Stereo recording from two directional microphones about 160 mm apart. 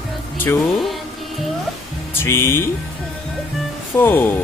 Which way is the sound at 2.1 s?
15° left (ahead or behind).